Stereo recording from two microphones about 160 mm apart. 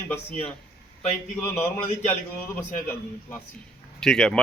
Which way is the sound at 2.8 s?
15° left (ahead or behind).